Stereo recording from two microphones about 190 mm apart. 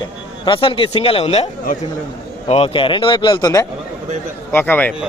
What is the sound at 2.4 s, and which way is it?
A man's voice, 30° left (ahead or behind).